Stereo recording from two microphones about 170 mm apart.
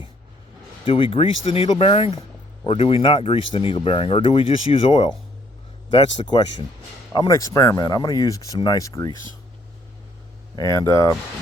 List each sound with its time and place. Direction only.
0.9 s speech: 30° left (ahead or behind)
10.5 s speech: 20° left (ahead or behind)